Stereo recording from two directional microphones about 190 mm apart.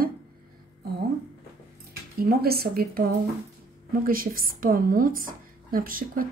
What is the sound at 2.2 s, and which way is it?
Speech, 55° right (ahead or behind).